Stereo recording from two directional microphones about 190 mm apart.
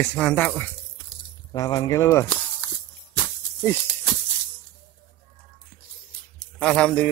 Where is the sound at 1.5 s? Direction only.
20° left (ahead or behind).